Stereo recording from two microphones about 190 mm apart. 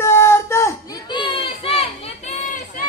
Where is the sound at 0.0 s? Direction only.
15° left (ahead or behind).